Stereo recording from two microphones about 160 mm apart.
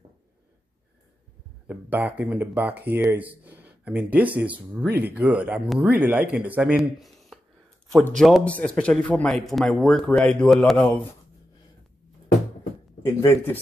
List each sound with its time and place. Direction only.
1.7 s speech: 10° right (ahead or behind)
13.0 s speech: 15° left (ahead or behind)